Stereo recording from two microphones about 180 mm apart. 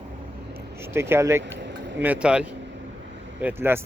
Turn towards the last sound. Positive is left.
turn(degrees=-10)  # may be behind; listen again after turning